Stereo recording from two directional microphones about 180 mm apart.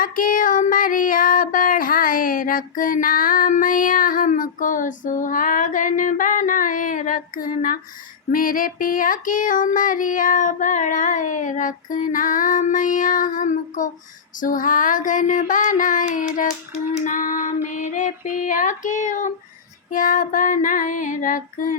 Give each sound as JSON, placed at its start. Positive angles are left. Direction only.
{"t": 0.0, "sound": "child singing", "side_deg": 50}